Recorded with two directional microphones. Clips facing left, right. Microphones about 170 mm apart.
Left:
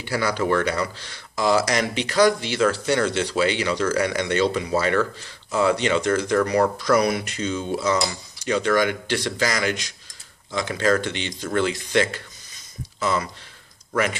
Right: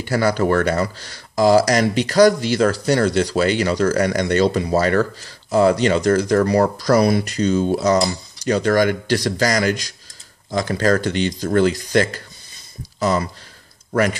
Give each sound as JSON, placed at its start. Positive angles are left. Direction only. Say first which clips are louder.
{"t": 0.0, "sound": "speech", "louder": "right 5 dB", "side_deg": -45}